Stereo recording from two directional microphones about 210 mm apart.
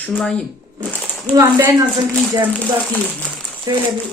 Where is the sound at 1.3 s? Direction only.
15° right (ahead or behind).